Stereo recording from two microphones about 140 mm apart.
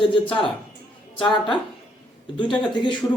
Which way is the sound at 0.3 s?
5° left (ahead or behind).